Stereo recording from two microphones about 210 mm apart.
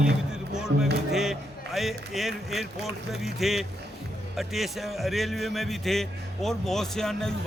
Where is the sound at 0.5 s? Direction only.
5° right (ahead or behind).